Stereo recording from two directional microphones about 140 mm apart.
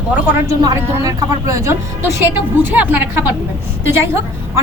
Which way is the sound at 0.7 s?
25° right (ahead or behind).